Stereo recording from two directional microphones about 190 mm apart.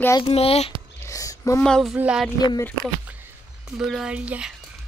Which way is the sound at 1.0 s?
15° left (ahead or behind).